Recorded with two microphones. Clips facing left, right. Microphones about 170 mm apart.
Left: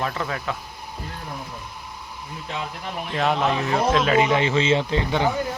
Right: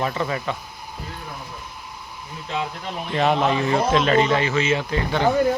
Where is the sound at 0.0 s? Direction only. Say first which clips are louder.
Right 3 dB; 5° right (ahead or behind).